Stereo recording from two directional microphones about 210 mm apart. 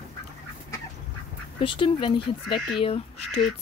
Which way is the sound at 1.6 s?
25° left (ahead or behind).